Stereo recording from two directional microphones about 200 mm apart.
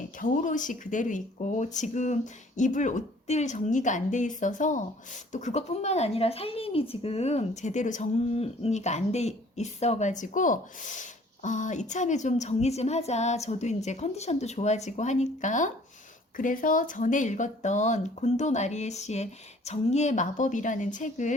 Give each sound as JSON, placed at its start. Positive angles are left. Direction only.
{"t": 0.2, "sound": "speech", "side_deg": 40}